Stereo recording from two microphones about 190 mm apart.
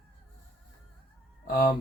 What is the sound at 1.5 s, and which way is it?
Speech, 45° left (ahead or behind).